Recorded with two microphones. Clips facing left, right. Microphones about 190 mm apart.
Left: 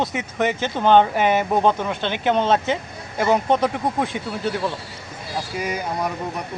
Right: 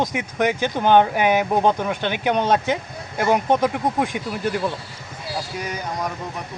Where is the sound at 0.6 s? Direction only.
10° right (ahead or behind).